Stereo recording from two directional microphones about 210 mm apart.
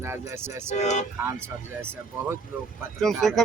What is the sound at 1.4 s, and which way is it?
Speech, 10° right (ahead or behind).